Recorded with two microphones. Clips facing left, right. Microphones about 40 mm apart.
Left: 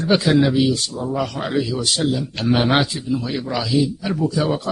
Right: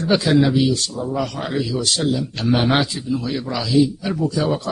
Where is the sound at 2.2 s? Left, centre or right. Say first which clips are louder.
Even; centre.